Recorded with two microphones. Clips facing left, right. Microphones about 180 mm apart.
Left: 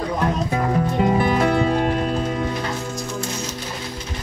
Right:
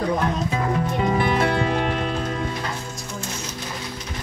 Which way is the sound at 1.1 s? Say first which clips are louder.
Left 2 dB; 40° left (ahead or behind).